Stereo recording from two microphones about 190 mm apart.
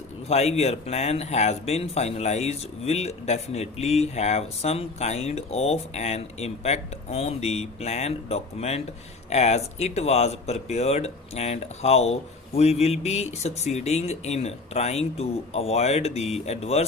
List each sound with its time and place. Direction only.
0.3 s speech: 35° left (ahead or behind)